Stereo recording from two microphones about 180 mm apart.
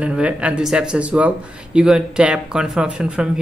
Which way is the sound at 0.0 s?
5° right (ahead or behind).